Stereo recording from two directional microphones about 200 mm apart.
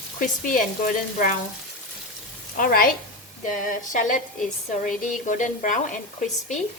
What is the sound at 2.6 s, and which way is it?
Frying, 45° left (ahead or behind).